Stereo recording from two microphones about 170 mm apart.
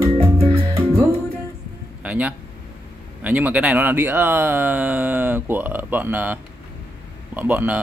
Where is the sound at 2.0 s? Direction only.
10° right (ahead or behind).